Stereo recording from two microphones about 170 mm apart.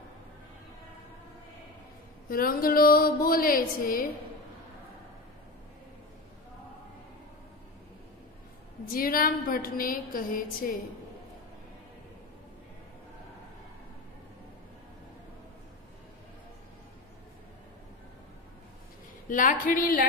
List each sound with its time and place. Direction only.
2.2 s a woman's voice: 60° left (ahead or behind)
8.8 s a woman's voice: 60° left (ahead or behind)
19.2 s speech: 50° left (ahead or behind)